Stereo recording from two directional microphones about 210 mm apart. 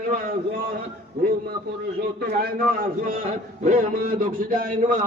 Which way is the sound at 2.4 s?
45° right (ahead or behind).